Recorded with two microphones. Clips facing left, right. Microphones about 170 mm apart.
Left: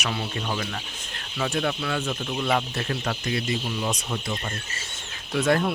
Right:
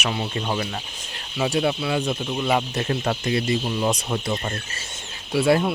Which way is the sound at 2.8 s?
25° right (ahead or behind).